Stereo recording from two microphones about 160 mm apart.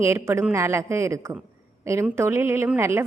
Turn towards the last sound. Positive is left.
turn(degrees=-15)  # may be behind; listen again after turning